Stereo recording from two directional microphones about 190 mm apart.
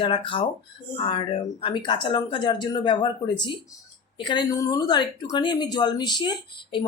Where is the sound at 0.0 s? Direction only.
25° left (ahead or behind).